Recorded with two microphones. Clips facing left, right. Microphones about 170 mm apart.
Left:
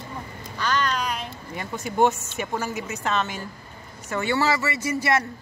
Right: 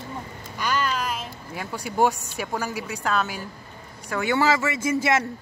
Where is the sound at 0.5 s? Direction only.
10° right (ahead or behind).